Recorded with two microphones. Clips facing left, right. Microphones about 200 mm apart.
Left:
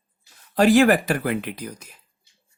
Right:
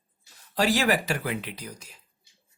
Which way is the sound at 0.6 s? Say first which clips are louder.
Left 8 dB; 55° left (ahead or behind).